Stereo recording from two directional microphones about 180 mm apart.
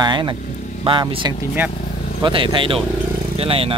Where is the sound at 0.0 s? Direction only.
25° right (ahead or behind).